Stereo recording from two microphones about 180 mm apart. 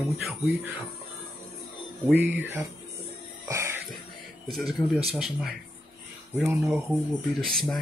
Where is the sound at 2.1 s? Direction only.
10° right (ahead or behind).